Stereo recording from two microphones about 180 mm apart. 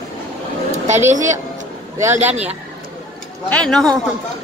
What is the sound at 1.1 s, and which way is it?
A woman's voice, 40° right (ahead or behind).